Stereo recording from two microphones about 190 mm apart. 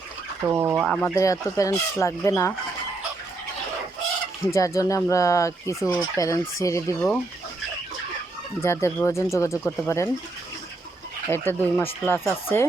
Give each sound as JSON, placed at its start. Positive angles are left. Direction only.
{"t": 0.4, "sound": "speech", "side_deg": -10}
{"t": 0.9, "sound": "speech", "side_deg": 5}
{"t": 1.2, "sound": "speech", "side_deg": 15}
{"t": 4.5, "sound": "speech", "side_deg": 15}
{"t": 8.6, "sound": "speech", "side_deg": 15}
{"t": 11.3, "sound": "speech", "side_deg": 10}